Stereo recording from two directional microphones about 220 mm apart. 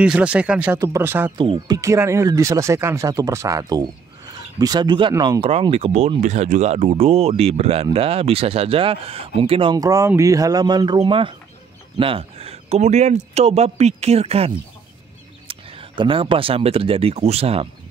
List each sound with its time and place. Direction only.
0.0 s speech: 5° right (ahead or behind)
1.4 s speech: 20° right (ahead or behind)
16.0 s speech: 20° right (ahead or behind)